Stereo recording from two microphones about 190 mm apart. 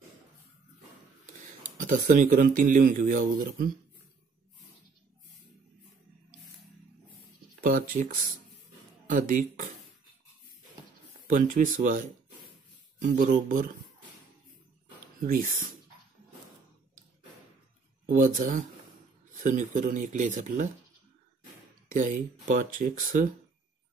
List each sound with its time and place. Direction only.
1.8 s speech: 40° right (ahead or behind)
7.6 s speech: 45° right (ahead or behind)
11.2 s speech: 45° right (ahead or behind)
15.1 s speech: 45° right (ahead or behind)
18.0 s speech: 45° right (ahead or behind)
21.9 s speech: 45° right (ahead or behind)